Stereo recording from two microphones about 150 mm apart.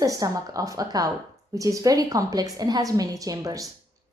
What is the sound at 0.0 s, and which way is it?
A woman's voice, 20° right (ahead or behind).